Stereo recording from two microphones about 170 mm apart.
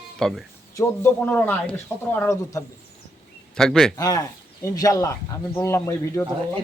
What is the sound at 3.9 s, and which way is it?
A man's voice, 20° left (ahead or behind).